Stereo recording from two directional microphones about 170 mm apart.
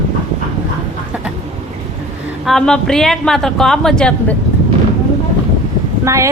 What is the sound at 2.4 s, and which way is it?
A woman's voice, centre (ahead or behind).